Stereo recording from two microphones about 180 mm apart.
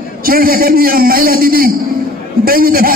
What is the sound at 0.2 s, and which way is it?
A man's voice, 55° right (ahead or behind).